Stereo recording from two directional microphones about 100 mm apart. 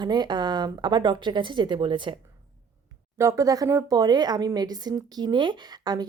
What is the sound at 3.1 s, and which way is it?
Speech, 30° right (ahead or behind).